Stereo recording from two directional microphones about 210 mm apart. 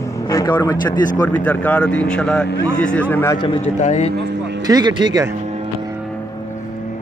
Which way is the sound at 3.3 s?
20° left (ahead or behind).